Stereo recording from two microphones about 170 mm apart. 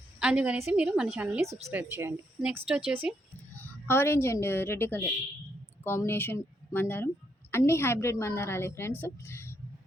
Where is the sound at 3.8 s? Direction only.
15° left (ahead or behind).